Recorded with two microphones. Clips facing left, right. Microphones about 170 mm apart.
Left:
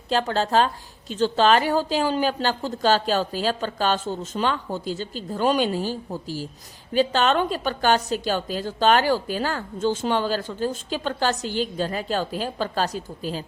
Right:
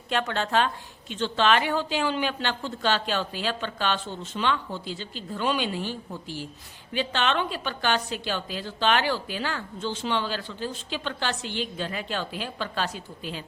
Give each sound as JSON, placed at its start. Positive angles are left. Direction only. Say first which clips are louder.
{"t": 0.1, "sound": "a woman's voice", "louder": "left 4 dB", "side_deg": 35}